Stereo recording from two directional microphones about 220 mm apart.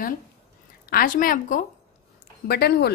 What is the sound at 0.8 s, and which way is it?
A woman's voice, 40° left (ahead or behind).